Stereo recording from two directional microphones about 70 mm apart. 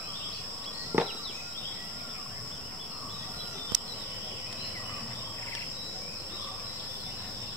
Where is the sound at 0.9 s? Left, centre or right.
Right.